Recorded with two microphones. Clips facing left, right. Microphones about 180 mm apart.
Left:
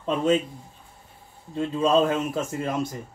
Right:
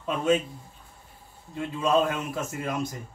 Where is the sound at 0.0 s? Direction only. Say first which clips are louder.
Left 2 dB; 30° left (ahead or behind).